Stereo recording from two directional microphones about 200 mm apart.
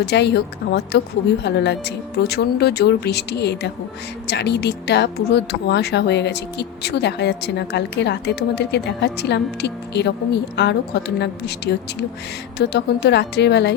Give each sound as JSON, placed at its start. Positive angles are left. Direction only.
{"t": 0.0, "sound": "speech", "side_deg": 55}